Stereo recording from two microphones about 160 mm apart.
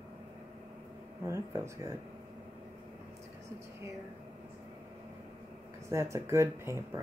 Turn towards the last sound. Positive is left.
turn(degrees=-20)  # may be behind; listen again after turning